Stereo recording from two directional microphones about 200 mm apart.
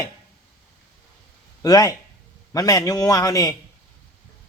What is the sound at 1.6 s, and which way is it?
A man's voice, 20° left (ahead or behind).